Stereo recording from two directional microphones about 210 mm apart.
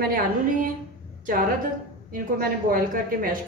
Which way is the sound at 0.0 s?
45° right (ahead or behind).